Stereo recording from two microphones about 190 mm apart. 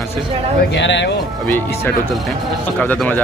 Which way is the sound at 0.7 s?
70° left (ahead or behind).